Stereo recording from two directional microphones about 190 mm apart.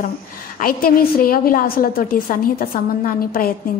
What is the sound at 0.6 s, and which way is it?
A woman's voice, 50° left (ahead or behind).